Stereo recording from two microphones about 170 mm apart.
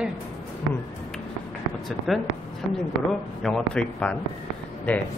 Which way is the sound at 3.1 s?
5° left (ahead or behind).